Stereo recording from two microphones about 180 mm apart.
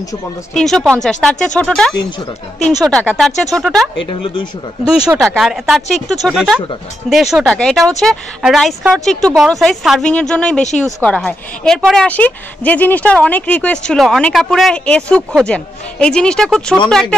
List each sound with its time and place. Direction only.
0.6 s a woman's voice: 5° left (ahead or behind)
4.0 s speech: 25° left (ahead or behind)
5.1 s a woman's voice: centre (ahead or behind)